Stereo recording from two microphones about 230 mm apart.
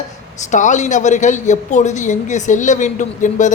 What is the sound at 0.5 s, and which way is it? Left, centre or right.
A woman's voice, left.